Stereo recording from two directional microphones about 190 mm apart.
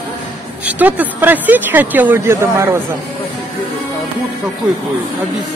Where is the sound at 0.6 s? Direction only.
10° right (ahead or behind).